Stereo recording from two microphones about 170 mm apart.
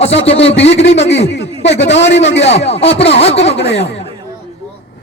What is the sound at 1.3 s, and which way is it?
Speech, 90° left.